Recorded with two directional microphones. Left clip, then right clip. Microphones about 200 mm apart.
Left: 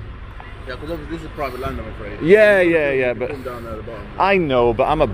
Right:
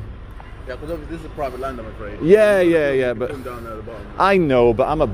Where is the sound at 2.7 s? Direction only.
30° right (ahead or behind).